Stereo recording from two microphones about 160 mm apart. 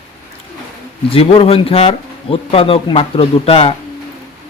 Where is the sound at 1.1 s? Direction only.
35° left (ahead or behind).